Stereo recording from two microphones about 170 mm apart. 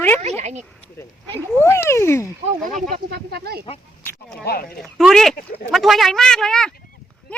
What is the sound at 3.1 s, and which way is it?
Speech, 70° right (ahead or behind).